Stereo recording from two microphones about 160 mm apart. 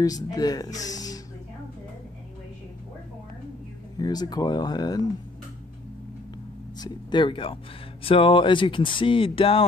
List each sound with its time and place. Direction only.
0.0 s speech: 25° left (ahead or behind)
4.0 s speech: 25° left (ahead or behind)
6.8 s speech: 30° left (ahead or behind)